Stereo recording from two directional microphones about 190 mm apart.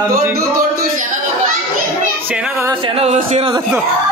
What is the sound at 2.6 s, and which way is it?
Speech, 15° right (ahead or behind).